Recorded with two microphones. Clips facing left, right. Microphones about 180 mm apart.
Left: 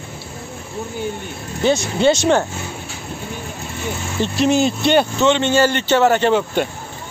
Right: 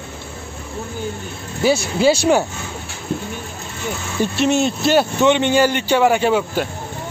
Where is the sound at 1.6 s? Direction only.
5° right (ahead or behind).